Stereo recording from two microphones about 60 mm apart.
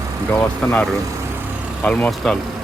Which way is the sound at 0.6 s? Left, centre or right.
Centre.